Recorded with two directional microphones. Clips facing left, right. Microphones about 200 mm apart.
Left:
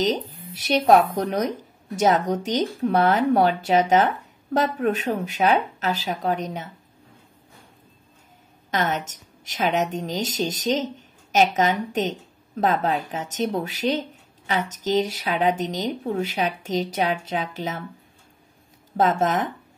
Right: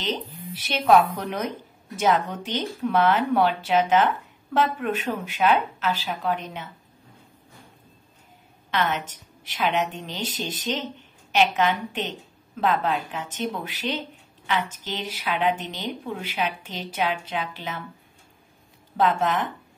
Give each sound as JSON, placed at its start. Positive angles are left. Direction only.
{"t": 0.7, "sound": "speech", "side_deg": 40}
{"t": 8.6, "sound": "a sound", "side_deg": 45}
{"t": 9.0, "sound": "speech", "side_deg": 45}
{"t": 18.9, "sound": "speech", "side_deg": 45}